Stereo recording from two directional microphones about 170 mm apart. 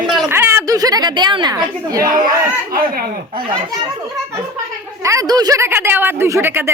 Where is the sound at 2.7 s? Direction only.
55° right (ahead or behind).